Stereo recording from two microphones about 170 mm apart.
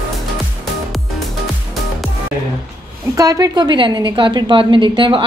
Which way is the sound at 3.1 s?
20° right (ahead or behind).